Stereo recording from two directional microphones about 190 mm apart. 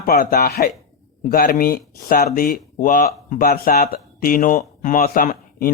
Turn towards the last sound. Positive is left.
turn(degrees=50)  # may be behind; listen again after turning